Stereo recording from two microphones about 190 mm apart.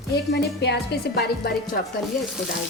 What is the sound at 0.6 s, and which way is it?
Speech, 60° left (ahead or behind).